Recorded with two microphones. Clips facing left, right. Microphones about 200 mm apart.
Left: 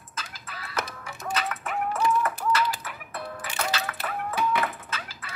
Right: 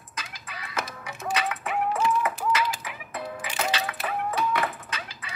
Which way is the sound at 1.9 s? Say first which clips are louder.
Left 2 dB; 15° right (ahead or behind).